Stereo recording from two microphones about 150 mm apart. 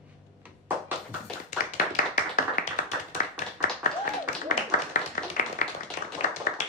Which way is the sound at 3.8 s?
60° left (ahead or behind).